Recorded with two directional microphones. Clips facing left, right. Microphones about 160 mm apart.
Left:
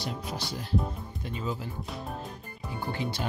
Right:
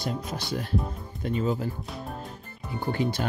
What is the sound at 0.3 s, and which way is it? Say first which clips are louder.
Speech: right 2 dB; 60° right (ahead or behind).